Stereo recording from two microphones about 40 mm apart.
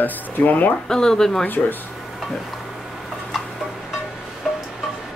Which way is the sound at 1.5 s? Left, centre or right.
Left.